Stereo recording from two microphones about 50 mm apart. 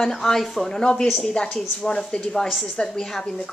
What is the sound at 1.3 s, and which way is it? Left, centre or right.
A woman's voice, centre.